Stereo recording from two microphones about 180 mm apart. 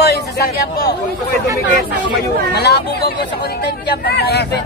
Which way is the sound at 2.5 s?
65° left (ahead or behind).